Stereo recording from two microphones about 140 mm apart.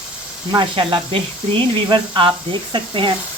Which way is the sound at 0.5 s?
35° right (ahead or behind).